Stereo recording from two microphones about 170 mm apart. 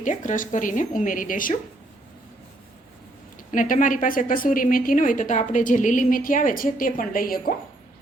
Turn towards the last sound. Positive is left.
turn(degrees=60)  # may be behind; listen again after turning